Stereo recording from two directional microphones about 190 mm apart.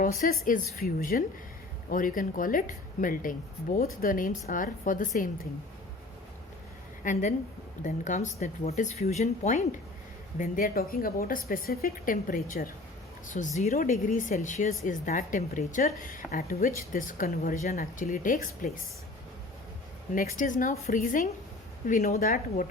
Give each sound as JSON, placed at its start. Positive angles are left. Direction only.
{"t": 0.0, "sound": "speech", "side_deg": 50}
{"t": 7.0, "sound": "speech", "side_deg": 40}
{"t": 20.3, "sound": "speech", "side_deg": 45}